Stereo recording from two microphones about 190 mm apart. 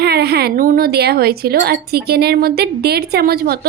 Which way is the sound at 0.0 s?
55° right (ahead or behind).